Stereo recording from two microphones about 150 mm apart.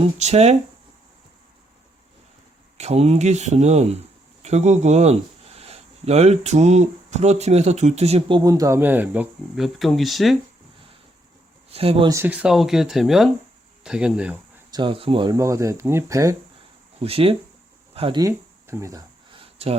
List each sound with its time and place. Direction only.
0.0 s speech: 45° right (ahead or behind)
2.7 s speech: 45° right (ahead or behind)
8.4 s speech: 25° right (ahead or behind)
9.6 s speech: centre (ahead or behind)
11.7 s speech: 40° right (ahead or behind)
12.0 s speech: 15° right (ahead or behind)
14.7 s speech: 35° right (ahead or behind)
15.4 s speech: 20° right (ahead or behind)
17.0 s speech: 40° right (ahead or behind)
18.2 s speech: 20° right (ahead or behind)
19.3 s a sound: 40° right (ahead or behind)